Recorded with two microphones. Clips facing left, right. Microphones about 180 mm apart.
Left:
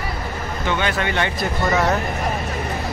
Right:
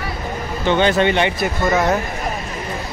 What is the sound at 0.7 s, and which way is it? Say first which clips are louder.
Speech: right 7 dB; 30° right (ahead or behind).